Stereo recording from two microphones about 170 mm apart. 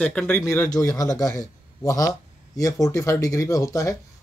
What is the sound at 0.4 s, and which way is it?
Speech, 20° left (ahead or behind).